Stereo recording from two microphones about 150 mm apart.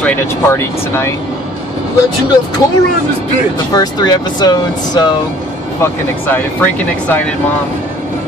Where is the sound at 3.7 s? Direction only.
25° left (ahead or behind).